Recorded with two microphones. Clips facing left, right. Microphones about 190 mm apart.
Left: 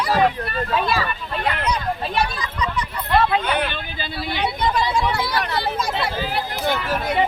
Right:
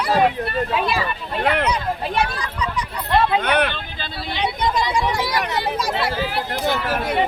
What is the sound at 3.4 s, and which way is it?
Speech, 70° right (ahead or behind).